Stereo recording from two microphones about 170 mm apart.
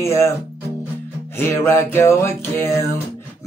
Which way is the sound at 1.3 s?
15° left (ahead or behind).